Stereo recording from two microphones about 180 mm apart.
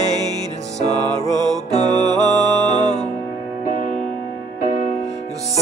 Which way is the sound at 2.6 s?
40° left (ahead or behind).